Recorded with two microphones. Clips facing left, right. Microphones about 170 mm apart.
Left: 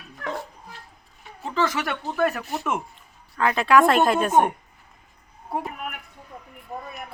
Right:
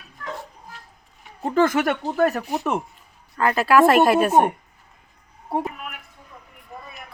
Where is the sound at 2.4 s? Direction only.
15° right (ahead or behind).